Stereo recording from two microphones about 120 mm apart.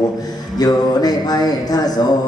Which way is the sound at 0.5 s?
35° left (ahead or behind).